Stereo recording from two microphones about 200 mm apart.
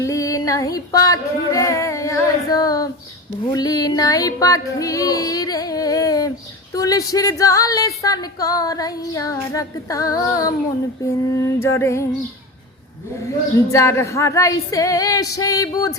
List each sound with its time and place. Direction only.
0.0 s female singing: 15° left (ahead or behind)
3.5 s music: 20° left (ahead or behind)
6.7 s female singing: 15° left (ahead or behind)
13.7 s female singing: 15° left (ahead or behind)